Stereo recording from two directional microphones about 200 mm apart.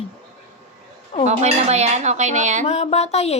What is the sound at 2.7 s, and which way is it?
Speech, 30° left (ahead or behind).